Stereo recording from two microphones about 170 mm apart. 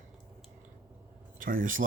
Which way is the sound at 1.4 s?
55° right (ahead or behind).